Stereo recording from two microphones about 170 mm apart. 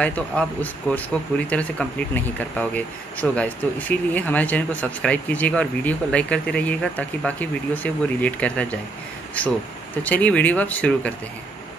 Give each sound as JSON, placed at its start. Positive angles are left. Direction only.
{"t": 0.0, "sound": "speech", "side_deg": 10}